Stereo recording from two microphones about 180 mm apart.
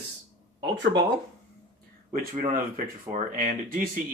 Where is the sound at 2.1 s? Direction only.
45° right (ahead or behind).